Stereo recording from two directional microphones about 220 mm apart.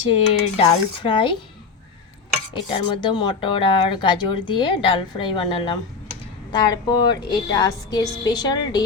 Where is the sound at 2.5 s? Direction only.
20° left (ahead or behind).